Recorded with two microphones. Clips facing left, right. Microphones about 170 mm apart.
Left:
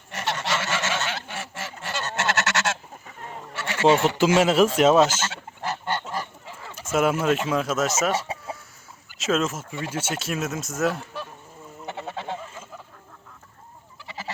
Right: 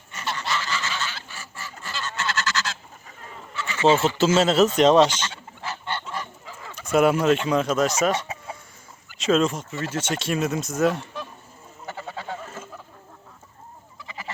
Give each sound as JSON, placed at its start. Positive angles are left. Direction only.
{"t": 0.1, "sound": "goose", "side_deg": 75}
{"t": 1.8, "sound": "goose", "side_deg": 65}
{"t": 3.5, "sound": "goat", "side_deg": 70}
{"t": 4.4, "sound": "speech", "side_deg": 10}
{"t": 5.6, "sound": "goose", "side_deg": 40}
{"t": 6.4, "sound": "fowl", "side_deg": 30}
{"t": 6.8, "sound": "speech", "side_deg": 0}
{"t": 11.9, "sound": "goose", "side_deg": 25}